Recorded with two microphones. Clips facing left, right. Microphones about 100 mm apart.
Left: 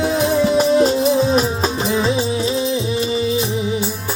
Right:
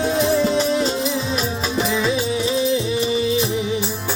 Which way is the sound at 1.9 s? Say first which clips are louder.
Left 2 dB; 30° left (ahead or behind).